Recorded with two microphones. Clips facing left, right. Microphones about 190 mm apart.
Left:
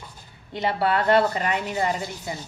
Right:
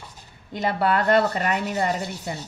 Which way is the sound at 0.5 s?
50° right (ahead or behind).